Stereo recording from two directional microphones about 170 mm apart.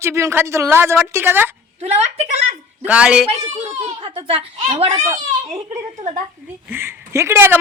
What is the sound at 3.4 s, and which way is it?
Speech, 35° right (ahead or behind).